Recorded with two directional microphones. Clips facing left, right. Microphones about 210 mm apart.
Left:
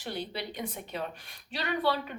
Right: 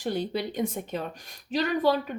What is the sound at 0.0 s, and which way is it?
Speech, 45° right (ahead or behind).